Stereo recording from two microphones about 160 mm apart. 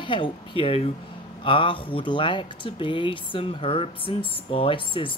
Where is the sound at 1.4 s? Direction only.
30° left (ahead or behind).